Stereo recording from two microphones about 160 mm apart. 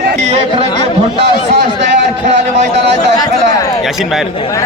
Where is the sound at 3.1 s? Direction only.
25° left (ahead or behind).